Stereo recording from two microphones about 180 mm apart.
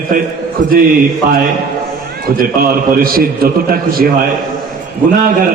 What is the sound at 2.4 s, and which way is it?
A man's voice, 55° right (ahead or behind).